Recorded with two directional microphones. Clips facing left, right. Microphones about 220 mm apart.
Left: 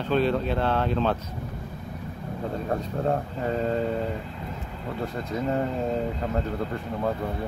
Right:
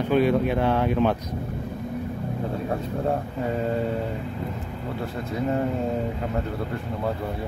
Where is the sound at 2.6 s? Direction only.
5° right (ahead or behind).